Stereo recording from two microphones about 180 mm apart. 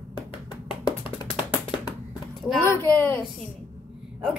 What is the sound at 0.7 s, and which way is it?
Music, 30° left (ahead or behind).